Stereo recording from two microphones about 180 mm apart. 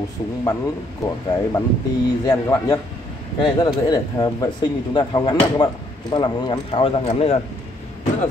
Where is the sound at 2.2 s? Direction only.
20° left (ahead or behind).